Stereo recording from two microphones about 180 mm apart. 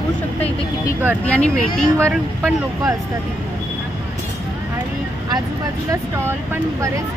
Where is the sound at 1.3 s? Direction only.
5° left (ahead or behind).